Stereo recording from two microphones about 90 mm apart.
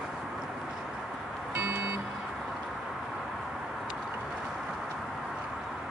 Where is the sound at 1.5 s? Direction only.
20° right (ahead or behind).